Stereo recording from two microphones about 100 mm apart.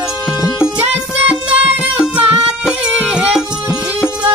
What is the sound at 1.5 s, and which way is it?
Music, 90° right.